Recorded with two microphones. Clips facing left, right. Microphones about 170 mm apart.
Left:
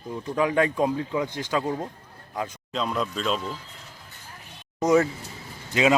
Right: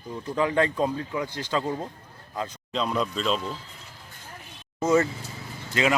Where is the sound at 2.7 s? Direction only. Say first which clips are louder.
Right 1 dB; centre (ahead or behind).